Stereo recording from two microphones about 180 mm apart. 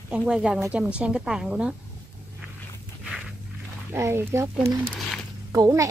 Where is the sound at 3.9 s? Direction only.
15° right (ahead or behind).